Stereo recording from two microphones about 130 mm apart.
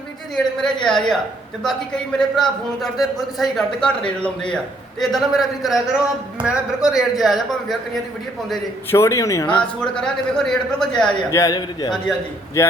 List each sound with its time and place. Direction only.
0.3 s speech: 5° left (ahead or behind)
8.9 s a man's voice: 20° left (ahead or behind)
9.5 s speech: 10° left (ahead or behind)
11.3 s a man's voice: 25° left (ahead or behind)
12.6 s a man's voice: 20° left (ahead or behind)